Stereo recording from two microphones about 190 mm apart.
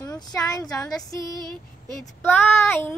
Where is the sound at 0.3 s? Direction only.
20° left (ahead or behind).